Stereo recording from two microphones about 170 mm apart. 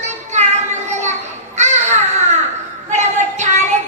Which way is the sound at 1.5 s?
45° right (ahead or behind).